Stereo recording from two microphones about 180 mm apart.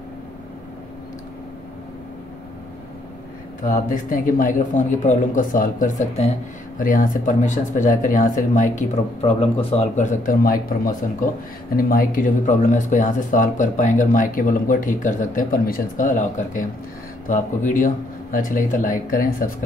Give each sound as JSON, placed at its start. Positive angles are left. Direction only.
{"t": 3.6, "sound": "speech", "side_deg": 50}
{"t": 6.8, "sound": "speech", "side_deg": 50}
{"t": 17.6, "sound": "speech", "side_deg": 50}